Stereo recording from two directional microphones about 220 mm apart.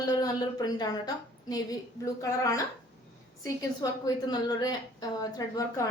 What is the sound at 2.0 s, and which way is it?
A woman's voice, 15° left (ahead or behind).